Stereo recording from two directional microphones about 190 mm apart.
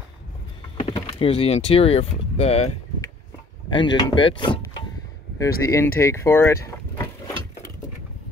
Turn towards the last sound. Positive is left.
turn(degrees=20)  # may be behind; listen again after turning